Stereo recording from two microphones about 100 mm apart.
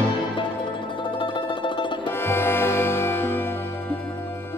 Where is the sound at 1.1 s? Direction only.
55° left (ahead or behind).